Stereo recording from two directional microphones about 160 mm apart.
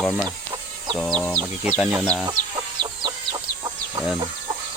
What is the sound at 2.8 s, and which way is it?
Chicken, 30° right (ahead or behind).